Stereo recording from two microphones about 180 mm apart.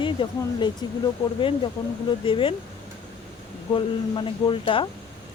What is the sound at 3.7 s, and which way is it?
Speech, 25° left (ahead or behind).